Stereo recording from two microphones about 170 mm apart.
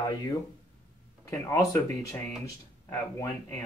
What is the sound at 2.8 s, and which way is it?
Speech, 15° left (ahead or behind).